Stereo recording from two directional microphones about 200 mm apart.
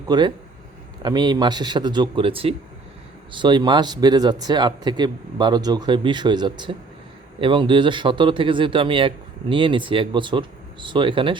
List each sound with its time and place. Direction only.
0.1 s speech: 20° right (ahead or behind)